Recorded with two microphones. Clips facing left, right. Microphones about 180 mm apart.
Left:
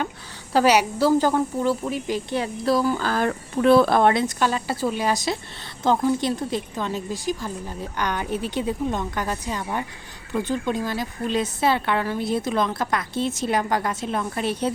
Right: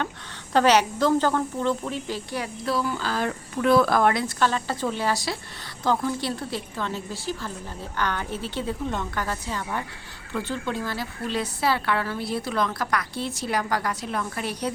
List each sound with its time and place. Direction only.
0.5 s a woman's voice: 10° left (ahead or behind)
2.4 s speech: 40° left (ahead or behind)
3.5 s a woman's voice: 30° left (ahead or behind)